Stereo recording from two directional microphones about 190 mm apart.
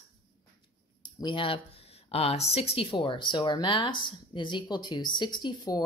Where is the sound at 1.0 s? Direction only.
25° left (ahead or behind).